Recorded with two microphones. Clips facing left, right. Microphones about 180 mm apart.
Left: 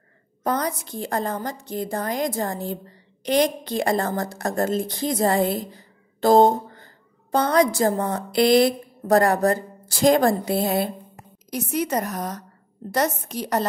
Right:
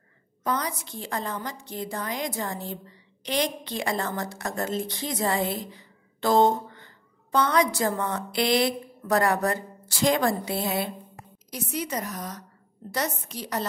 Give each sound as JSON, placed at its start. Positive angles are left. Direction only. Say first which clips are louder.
{"t": 0.4, "sound": "a woman's voice", "louder": "left 4 dB", "side_deg": 45}